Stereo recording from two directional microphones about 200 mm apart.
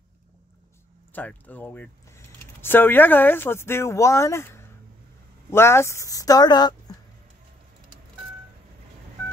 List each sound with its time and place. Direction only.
1.1 s speech: 10° left (ahead or behind)